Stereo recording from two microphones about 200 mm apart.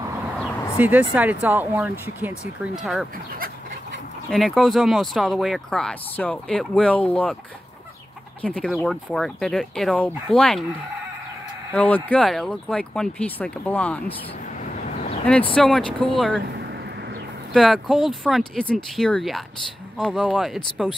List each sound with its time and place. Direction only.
0.7 s speech: 10° right (ahead or behind)
4.3 s speech: centre (ahead or behind)
8.4 s speech: 5° left (ahead or behind)
11.7 s speech: 5° left (ahead or behind)
15.5 s speech: 5° left (ahead or behind)
17.5 s speech: centre (ahead or behind)